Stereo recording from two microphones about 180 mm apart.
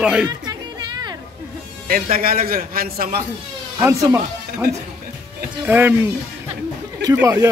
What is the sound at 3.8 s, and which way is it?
Speech, 15° right (ahead or behind).